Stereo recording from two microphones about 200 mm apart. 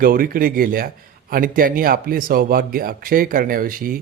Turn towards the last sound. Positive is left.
turn(degrees=-45)  # may be behind; listen again after turning